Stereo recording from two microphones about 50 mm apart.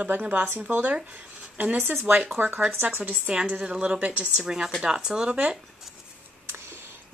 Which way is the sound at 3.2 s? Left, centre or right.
Centre.